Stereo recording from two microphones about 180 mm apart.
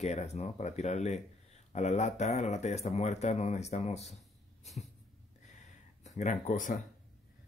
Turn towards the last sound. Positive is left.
turn(degrees=45)  # may be behind; listen again after turning